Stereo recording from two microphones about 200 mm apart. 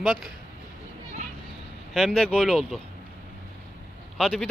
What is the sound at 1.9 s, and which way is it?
Speech, centre (ahead or behind).